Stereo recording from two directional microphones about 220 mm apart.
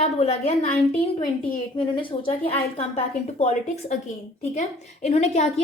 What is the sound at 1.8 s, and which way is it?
A woman's voice, 20° left (ahead or behind).